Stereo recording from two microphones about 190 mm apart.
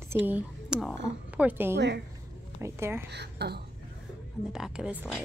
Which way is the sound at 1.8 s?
65° right (ahead or behind).